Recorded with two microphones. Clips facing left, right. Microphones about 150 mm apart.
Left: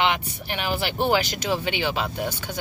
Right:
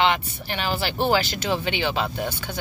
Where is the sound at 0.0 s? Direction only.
10° left (ahead or behind).